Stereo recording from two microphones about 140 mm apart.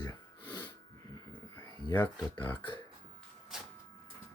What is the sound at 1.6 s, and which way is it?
Speech, 35° left (ahead or behind).